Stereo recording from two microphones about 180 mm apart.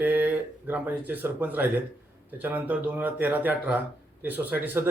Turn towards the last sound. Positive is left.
turn(degrees=-10)  # may be behind; listen again after turning